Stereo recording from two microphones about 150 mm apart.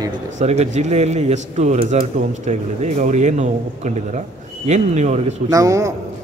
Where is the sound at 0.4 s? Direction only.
50° right (ahead or behind).